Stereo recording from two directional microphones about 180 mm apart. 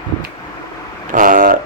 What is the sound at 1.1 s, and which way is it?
Speech, 50° right (ahead or behind).